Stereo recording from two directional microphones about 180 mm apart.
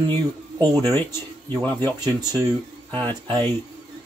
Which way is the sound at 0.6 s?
20° right (ahead or behind).